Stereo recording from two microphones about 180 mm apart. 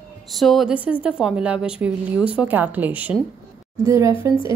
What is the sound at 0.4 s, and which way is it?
A woman's voice, centre (ahead or behind).